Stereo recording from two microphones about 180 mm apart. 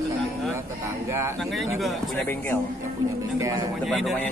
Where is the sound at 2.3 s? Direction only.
10° left (ahead or behind).